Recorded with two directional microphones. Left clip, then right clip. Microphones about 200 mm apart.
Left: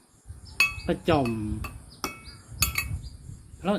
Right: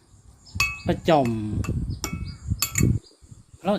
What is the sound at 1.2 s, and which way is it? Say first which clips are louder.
Speech: right 3 dB; 15° right (ahead or behind).